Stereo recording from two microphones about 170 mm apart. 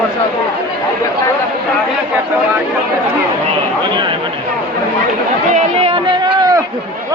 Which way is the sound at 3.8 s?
25° right (ahead or behind).